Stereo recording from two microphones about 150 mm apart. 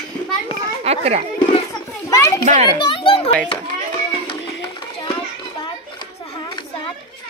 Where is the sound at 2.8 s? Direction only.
35° left (ahead or behind).